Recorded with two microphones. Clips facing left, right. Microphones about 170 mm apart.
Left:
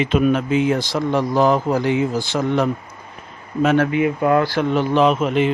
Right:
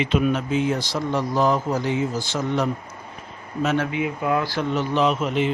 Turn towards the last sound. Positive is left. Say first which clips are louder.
# left 5 dB
turn(degrees=60)  # may be behind; listen again after turning